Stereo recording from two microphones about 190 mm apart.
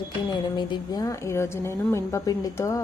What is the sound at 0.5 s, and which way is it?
A woman's voice, 25° left (ahead or behind).